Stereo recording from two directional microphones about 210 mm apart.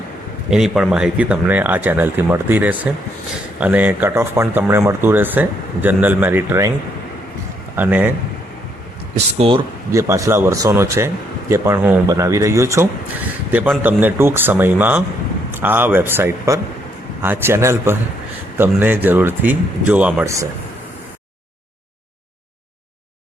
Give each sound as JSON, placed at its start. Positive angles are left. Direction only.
{"t": 0.5, "sound": "speech", "side_deg": -5}
{"t": 7.8, "sound": "speech", "side_deg": -10}
{"t": 9.1, "sound": "speech", "side_deg": -30}
{"t": 9.9, "sound": "speech", "side_deg": -15}